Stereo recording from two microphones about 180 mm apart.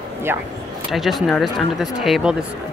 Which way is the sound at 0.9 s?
Centre (ahead or behind).